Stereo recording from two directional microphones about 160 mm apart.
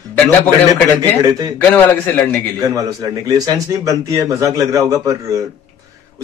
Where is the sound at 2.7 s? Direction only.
20° right (ahead or behind).